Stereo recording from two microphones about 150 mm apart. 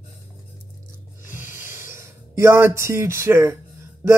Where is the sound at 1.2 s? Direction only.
15° right (ahead or behind).